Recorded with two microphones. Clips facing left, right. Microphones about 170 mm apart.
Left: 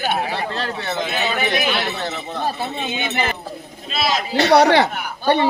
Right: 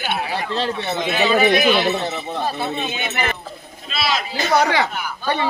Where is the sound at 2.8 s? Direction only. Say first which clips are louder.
Left 1 dB; 25° left (ahead or behind).